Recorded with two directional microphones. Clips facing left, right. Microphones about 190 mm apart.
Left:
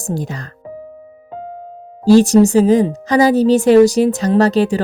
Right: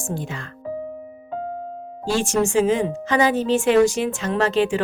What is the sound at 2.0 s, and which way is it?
A woman's voice, 40° left (ahead or behind).